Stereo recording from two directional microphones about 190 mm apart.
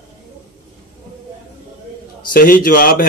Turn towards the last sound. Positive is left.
turn(degrees=50)  # may be behind; listen again after turning